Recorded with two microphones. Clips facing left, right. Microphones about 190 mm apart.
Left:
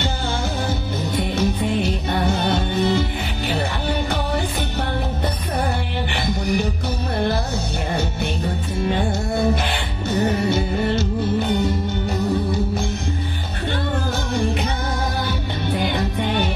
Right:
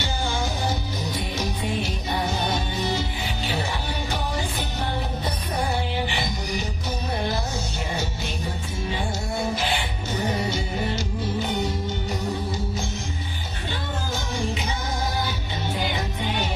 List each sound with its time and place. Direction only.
0.7 s music: 55° left (ahead or behind)
6.0 s music: 60° left (ahead or behind)
7.9 s music: 60° left (ahead or behind)
10.3 s music: 60° left (ahead or behind)
14.3 s music: 60° left (ahead or behind)